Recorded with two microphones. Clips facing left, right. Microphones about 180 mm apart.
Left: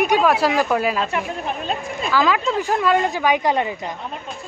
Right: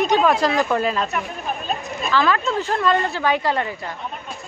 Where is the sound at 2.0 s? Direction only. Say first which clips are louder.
Left 1 dB; 10° left (ahead or behind).